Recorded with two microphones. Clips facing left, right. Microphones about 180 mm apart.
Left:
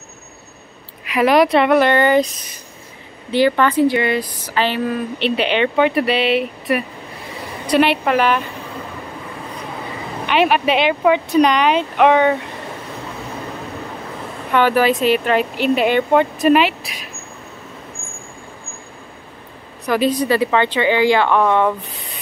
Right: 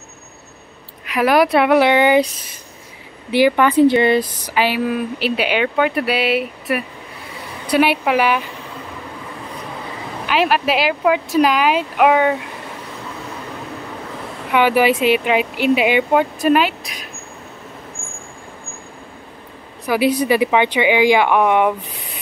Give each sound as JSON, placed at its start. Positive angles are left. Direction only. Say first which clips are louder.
{"t": 1.0, "sound": "speech", "louder": "left 1 dB", "side_deg": 0}
{"t": 3.3, "sound": "speech", "louder": "right 1 dB", "side_deg": -10}
{"t": 3.8, "sound": "speech", "louder": "right 4 dB", "side_deg": -25}
{"t": 4.5, "sound": "speech", "louder": "left 1 dB", "side_deg": -10}
{"t": 10.2, "sound": "speech", "louder": "left 2 dB", "side_deg": 0}
{"t": 14.5, "sound": "speech", "louder": "even", "side_deg": -10}
{"t": 19.9, "sound": "speech", "louder": "right 1 dB", "side_deg": -10}